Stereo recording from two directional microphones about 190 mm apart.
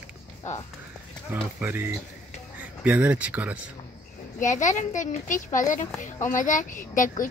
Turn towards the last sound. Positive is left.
turn(degrees=45)  # may be behind; listen again after turning